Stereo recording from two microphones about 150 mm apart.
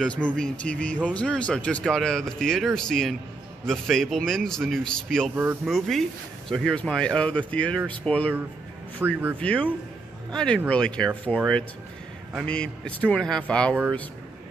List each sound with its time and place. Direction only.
0.0 s speech: 5° left (ahead or behind)
5.3 s speech: 15° right (ahead or behind)
5.7 s speech: centre (ahead or behind)
9.0 s speech: 15° right (ahead or behind)
9.4 s speech: 10° left (ahead or behind)
12.4 s speech: 5° left (ahead or behind)